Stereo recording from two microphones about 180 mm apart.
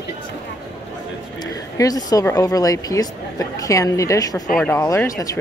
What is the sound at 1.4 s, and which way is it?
A woman's voice, 20° left (ahead or behind).